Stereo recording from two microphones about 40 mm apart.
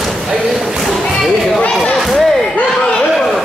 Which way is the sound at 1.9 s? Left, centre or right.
Centre.